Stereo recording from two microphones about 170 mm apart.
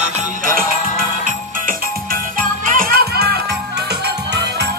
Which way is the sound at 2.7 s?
60° right (ahead or behind).